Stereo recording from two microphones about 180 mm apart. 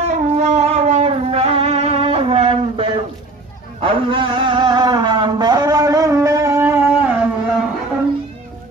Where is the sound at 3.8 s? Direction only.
30° right (ahead or behind); by 7.1 s 10° right (ahead or behind).